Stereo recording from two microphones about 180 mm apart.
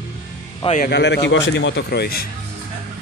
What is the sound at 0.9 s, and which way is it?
A man's voice, 70° left (ahead or behind).